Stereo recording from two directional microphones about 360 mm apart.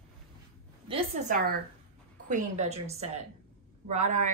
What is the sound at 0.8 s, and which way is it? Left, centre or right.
A woman's voice, centre.